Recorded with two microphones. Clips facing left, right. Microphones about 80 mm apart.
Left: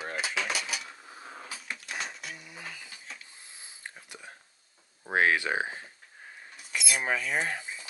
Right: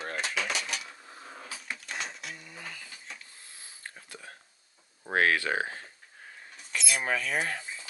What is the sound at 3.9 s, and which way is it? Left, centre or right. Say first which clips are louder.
Whispering: even; centre.